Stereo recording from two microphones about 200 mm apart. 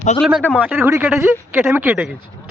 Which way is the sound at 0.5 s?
10° right (ahead or behind).